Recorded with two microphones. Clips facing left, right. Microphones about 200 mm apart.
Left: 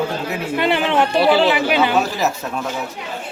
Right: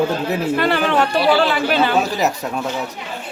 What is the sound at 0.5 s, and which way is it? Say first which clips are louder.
Speech: left 2 dB; 20° left (ahead or behind).